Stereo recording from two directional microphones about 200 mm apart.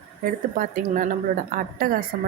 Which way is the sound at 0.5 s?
45° right (ahead or behind).